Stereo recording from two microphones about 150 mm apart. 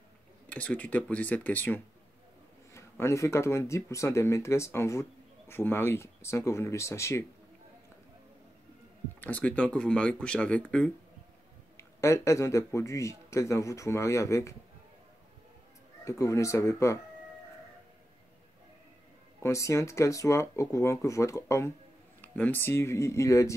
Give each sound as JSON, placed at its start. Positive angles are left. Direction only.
{"t": 0.5, "sound": "speech", "side_deg": 10}
{"t": 9.2, "sound": "speech", "side_deg": 10}
{"t": 11.7, "sound": "speech", "side_deg": 20}
{"t": 16.0, "sound": "speech", "side_deg": 20}
{"t": 19.4, "sound": "speech", "side_deg": 20}